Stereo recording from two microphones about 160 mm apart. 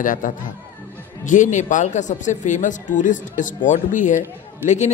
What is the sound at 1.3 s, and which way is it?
A man's voice, 50° left (ahead or behind).